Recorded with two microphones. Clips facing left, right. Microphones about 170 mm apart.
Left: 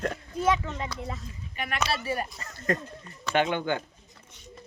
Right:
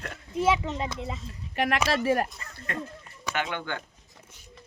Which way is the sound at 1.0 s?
Centre (ahead or behind).